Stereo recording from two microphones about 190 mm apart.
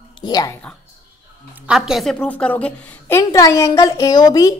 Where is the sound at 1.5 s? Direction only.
5° right (ahead or behind); by 4.6 s 20° left (ahead or behind).